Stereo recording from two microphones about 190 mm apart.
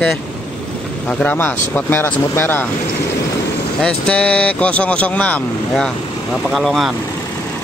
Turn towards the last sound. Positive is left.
turn(degrees=0)  # may be behind; listen again after turning